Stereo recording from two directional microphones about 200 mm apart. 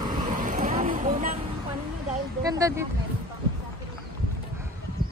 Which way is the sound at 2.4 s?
15° right (ahead or behind).